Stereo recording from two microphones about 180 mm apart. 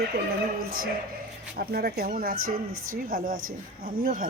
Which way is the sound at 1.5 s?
60° right (ahead or behind).